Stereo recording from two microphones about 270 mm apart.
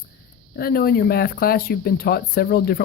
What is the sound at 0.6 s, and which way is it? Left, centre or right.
Speech, left.